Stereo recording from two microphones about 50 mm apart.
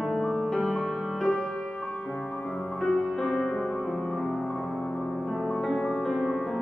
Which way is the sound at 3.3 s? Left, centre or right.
Centre.